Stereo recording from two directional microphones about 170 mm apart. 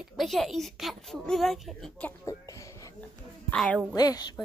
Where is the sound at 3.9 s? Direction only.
20° left (ahead or behind).